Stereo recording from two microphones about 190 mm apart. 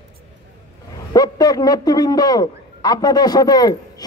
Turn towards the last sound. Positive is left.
turn(degrees=20)  # may be behind; listen again after turning